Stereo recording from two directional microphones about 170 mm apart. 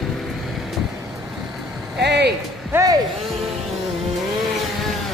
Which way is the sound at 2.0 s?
85° right.